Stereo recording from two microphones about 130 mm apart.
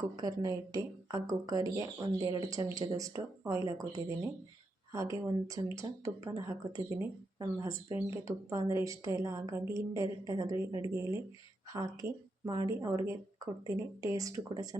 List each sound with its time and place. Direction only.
0.2 s a woman's voice: 30° right (ahead or behind)